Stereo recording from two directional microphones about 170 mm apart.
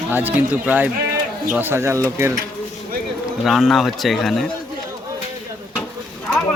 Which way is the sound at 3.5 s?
Centre (ahead or behind).